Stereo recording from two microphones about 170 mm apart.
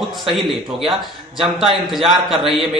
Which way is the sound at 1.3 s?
Centre (ahead or behind).